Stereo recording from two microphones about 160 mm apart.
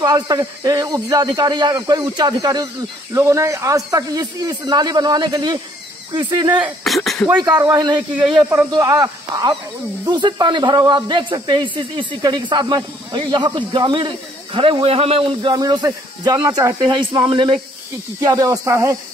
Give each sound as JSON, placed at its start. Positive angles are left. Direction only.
{"t": 0.0, "sound": "a man's voice", "side_deg": -25}
{"t": 6.6, "sound": "speech", "side_deg": 0}
{"t": 7.4, "sound": "a man's voice", "side_deg": -25}
{"t": 8.4, "sound": "speech", "side_deg": -5}
{"t": 8.7, "sound": "a man's voice", "side_deg": -25}
{"t": 17.2, "sound": "a man's voice", "side_deg": -35}